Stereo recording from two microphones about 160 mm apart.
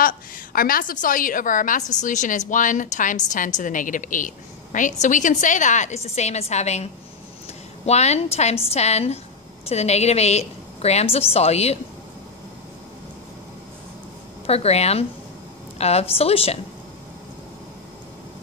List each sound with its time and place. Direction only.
0.0 s a woman's voice: 65° left (ahead or behind); by 11.8 s 40° left (ahead or behind)
14.4 s a woman's voice: 40° left (ahead or behind)